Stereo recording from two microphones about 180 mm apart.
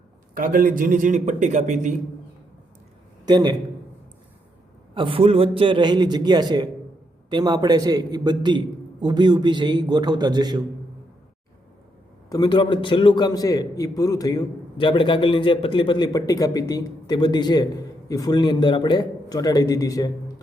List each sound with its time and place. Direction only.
0.3 s a man's voice: 50° right (ahead or behind)
3.2 s a man's voice: 20° right (ahead or behind)
4.9 s a man's voice: 30° right (ahead or behind)
12.3 s a man's voice: 25° left (ahead or behind)